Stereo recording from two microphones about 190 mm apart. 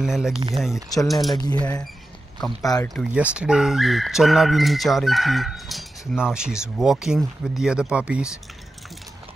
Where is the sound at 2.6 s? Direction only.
20° left (ahead or behind).